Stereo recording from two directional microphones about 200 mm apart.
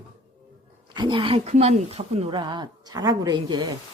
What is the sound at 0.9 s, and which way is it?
Speech, 25° right (ahead or behind).